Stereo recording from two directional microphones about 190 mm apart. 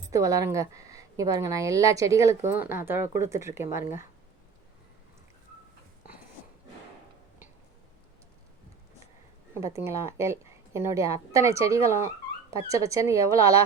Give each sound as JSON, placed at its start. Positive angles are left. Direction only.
{"t": 0.1, "sound": "a woman's voice", "side_deg": -15}
{"t": 9.6, "sound": "a woman's voice", "side_deg": -15}